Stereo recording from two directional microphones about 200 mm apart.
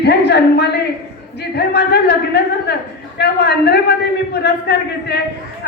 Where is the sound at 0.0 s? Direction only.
55° left (ahead or behind).